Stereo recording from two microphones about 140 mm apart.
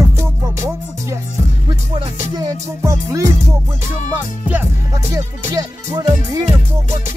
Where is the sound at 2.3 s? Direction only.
25° right (ahead or behind).